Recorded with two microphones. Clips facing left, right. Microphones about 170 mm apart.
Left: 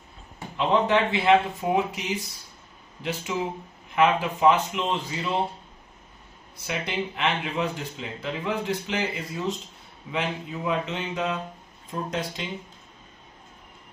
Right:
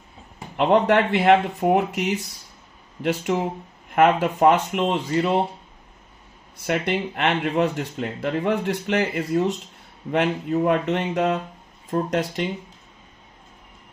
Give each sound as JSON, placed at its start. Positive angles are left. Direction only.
{"t": 0.6, "sound": "speech", "side_deg": -65}
{"t": 6.6, "sound": "speech", "side_deg": -60}